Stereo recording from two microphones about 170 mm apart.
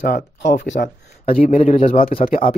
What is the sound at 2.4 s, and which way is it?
Speech, 30° left (ahead or behind).